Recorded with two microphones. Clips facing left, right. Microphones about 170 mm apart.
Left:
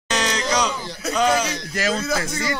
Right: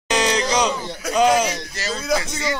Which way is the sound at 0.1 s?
20° right (ahead or behind).